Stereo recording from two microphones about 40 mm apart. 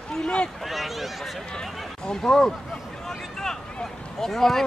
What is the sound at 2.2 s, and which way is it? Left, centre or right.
Speech, centre.